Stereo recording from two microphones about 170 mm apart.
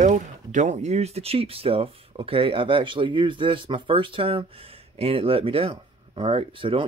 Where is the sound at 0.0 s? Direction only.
45° right (ahead or behind).